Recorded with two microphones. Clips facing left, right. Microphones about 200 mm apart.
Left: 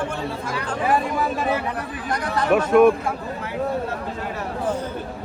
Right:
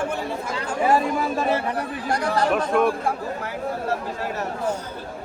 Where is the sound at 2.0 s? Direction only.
30° right (ahead or behind).